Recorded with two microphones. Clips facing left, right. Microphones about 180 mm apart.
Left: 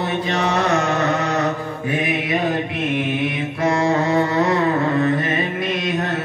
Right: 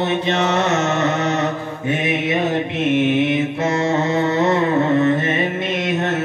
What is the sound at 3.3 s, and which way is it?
Mantra, 25° right (ahead or behind).